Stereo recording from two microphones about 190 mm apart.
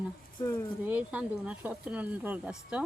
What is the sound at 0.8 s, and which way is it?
Speech, 5° right (ahead or behind).